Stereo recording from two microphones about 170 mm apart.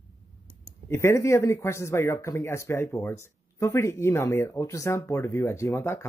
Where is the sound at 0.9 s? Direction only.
15° left (ahead or behind).